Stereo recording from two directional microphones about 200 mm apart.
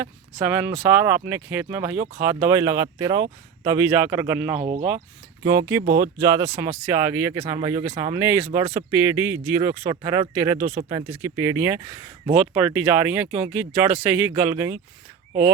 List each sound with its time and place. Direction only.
0.0 s speech: 5° right (ahead or behind)
4.6 s speech: 35° right (ahead or behind)
5.5 s speech: 15° right (ahead or behind)